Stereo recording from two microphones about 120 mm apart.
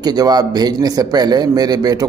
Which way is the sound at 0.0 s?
35° right (ahead or behind).